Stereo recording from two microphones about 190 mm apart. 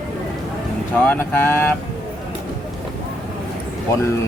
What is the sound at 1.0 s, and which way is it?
Speech, 10° left (ahead or behind).